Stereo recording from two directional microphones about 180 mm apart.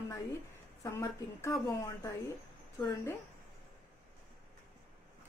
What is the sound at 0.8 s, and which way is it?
A woman's voice, 15° left (ahead or behind).